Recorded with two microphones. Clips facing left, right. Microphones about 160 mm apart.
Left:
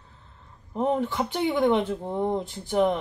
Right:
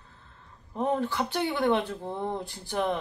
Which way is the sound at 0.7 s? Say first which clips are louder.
Left 3 dB; 20° left (ahead or behind).